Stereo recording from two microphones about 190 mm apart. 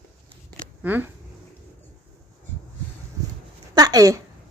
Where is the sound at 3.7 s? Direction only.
20° right (ahead or behind).